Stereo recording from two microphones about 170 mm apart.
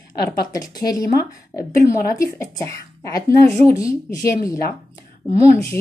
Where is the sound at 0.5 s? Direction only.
20° left (ahead or behind).